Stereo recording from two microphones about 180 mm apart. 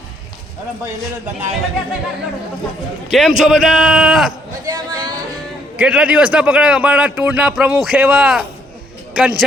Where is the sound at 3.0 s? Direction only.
Centre (ahead or behind).